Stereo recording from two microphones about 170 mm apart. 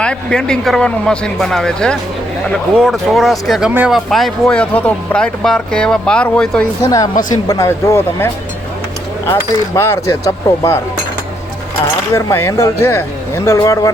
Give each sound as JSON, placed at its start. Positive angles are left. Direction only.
{"t": 0.0, "sound": "speech", "side_deg": 5}
{"t": 6.8, "sound": "a woman's voice", "side_deg": 20}
{"t": 12.1, "sound": "speech", "side_deg": 15}